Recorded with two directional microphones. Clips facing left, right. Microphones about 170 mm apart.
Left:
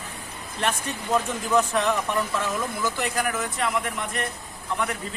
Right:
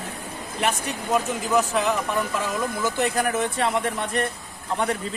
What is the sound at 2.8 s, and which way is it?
Speech, 25° right (ahead or behind).